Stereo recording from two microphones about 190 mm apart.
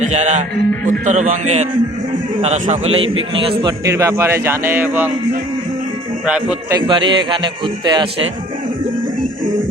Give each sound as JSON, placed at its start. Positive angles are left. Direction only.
{"t": 0.0, "sound": "a man's voice", "side_deg": -35}
{"t": 3.6, "sound": "speech", "side_deg": -20}
{"t": 6.2, "sound": "speech", "side_deg": -5}
{"t": 6.7, "sound": "a man's voice", "side_deg": -25}